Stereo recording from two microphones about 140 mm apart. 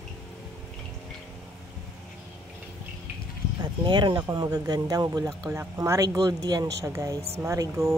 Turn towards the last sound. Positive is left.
turn(degrees=-20)  # may be behind; listen again after turning